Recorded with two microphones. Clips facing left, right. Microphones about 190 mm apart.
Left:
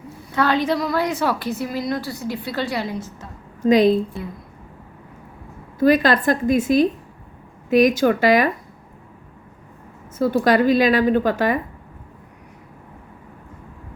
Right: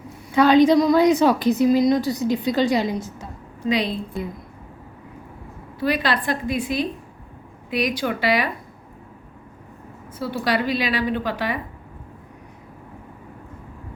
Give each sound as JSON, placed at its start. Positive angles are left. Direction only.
{"t": 0.3, "sound": "a woman's voice", "side_deg": -15}
{"t": 3.6, "sound": "a woman's voice", "side_deg": 45}
{"t": 5.8, "sound": "a woman's voice", "side_deg": 45}
{"t": 10.2, "sound": "a woman's voice", "side_deg": 45}